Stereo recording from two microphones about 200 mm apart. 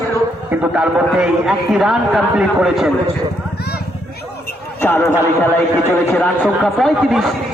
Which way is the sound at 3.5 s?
50° left (ahead or behind).